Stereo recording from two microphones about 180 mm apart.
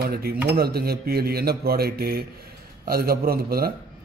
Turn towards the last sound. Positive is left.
turn(degrees=-55)  # may be behind; listen again after turning